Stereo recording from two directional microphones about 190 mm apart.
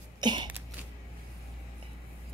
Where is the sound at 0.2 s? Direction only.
25° right (ahead or behind).